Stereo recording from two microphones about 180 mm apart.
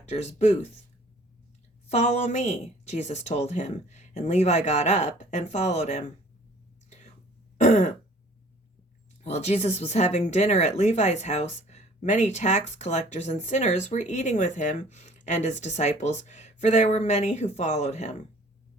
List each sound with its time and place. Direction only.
0.0 s speech: 40° left (ahead or behind)
1.9 s speech: 40° left (ahead or behind)
7.6 s throat clearing: 40° left (ahead or behind)
9.2 s speech: 35° left (ahead or behind)